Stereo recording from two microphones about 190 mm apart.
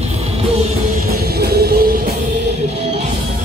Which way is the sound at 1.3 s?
55° right (ahead or behind).